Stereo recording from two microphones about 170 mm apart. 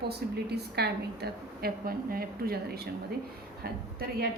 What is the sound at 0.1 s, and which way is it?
A woman's voice, 70° right (ahead or behind).